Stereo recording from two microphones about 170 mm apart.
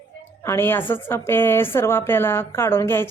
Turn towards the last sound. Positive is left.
turn(degrees=15)  # may be behind; listen again after turning